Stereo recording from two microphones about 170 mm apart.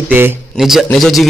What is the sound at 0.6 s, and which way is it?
Speech, centre (ahead or behind).